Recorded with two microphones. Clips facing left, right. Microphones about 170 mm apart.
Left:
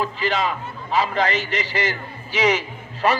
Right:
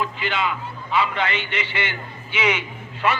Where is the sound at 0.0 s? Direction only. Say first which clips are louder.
Left 2 dB; 40° left (ahead or behind).